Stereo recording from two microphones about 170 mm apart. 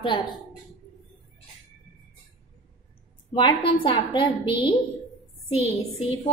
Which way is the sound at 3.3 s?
25° left (ahead or behind).